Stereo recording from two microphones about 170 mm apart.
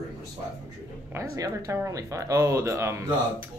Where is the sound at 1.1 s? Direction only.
20° right (ahead or behind).